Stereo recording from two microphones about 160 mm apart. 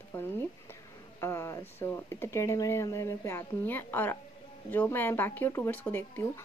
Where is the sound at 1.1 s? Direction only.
15° left (ahead or behind).